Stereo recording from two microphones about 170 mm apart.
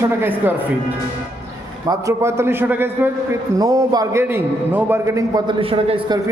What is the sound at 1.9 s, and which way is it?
A man's voice, 15° right (ahead or behind).